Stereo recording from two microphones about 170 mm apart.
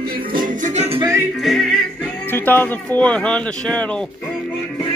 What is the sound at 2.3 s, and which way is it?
Speech, 10° left (ahead or behind).